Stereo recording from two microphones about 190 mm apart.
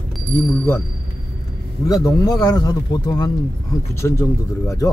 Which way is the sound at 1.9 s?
20° left (ahead or behind).